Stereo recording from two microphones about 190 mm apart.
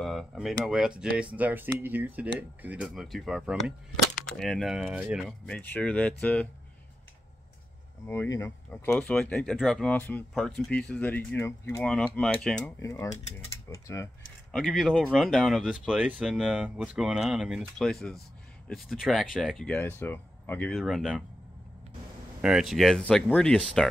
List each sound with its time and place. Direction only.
0.0 s speech: centre (ahead or behind)
5.6 s speech: 10° left (ahead or behind)
8.1 s speech: 15° left (ahead or behind)
12.8 s speech: 15° left (ahead or behind)
14.5 s speech: centre (ahead or behind)
22.4 s speech: centre (ahead or behind)